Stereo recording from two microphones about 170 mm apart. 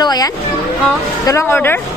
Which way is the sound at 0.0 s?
25° left (ahead or behind).